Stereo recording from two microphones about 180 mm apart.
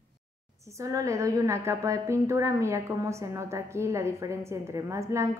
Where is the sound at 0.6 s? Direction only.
15° right (ahead or behind).